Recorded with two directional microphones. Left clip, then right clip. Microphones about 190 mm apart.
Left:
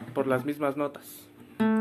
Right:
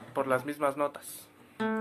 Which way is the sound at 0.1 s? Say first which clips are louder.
Left 2 dB; 5° left (ahead or behind).